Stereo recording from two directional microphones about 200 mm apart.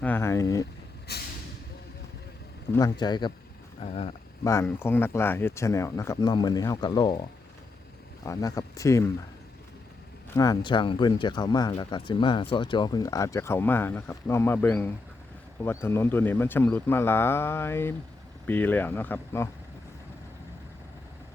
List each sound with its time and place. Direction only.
0.0 s speech: 10° left (ahead or behind)
1.1 s vehicle: 55° left (ahead or behind)
2.7 s speech: 20° left (ahead or behind)
4.4 s speech: 10° left (ahead or behind)
8.2 s speech: 15° left (ahead or behind)
10.3 s speech: 20° left (ahead or behind)